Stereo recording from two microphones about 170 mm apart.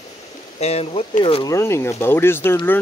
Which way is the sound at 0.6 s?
35° left (ahead or behind).